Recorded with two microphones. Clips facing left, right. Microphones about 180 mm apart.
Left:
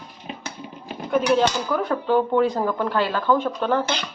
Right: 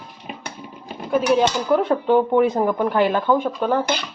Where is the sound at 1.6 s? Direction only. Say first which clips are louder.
Right 5 dB; 25° right (ahead or behind).